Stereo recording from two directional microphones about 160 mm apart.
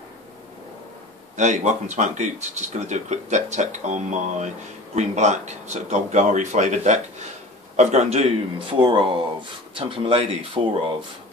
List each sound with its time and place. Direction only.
1.3 s speech: 50° right (ahead or behind)
8.5 s speech: 30° right (ahead or behind)